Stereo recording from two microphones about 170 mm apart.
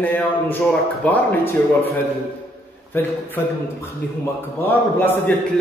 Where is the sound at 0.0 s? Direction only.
10° left (ahead or behind).